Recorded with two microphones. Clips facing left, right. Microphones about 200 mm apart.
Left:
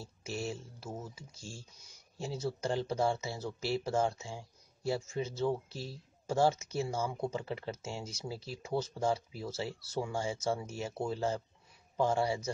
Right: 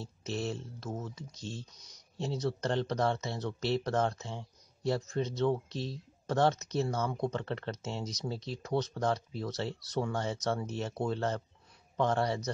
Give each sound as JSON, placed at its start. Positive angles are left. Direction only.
{"t": 0.0, "sound": "speech", "side_deg": 10}